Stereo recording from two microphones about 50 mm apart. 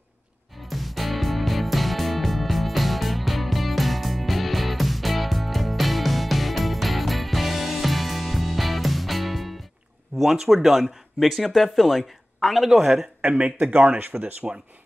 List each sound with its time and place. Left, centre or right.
0.7 s music: centre
10.1 s speech: centre
13.2 s speech: right